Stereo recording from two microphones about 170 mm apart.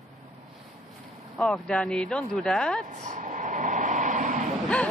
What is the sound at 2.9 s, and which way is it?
Vehicle, 50° right (ahead or behind).